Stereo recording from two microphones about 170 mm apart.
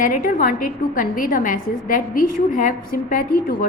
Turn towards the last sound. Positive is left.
turn(degrees=55)  # may be behind; listen again after turning